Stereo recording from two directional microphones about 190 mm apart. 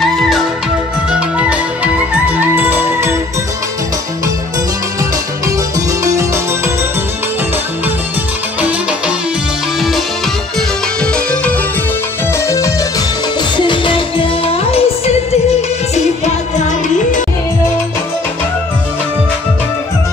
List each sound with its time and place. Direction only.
2.4 s music: 10° right (ahead or behind)
6.0 s music: 15° right (ahead or behind)
12.4 s music: 15° left (ahead or behind)
13.6 s music: 25° left (ahead or behind)